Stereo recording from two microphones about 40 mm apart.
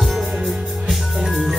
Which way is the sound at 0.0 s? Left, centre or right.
Centre.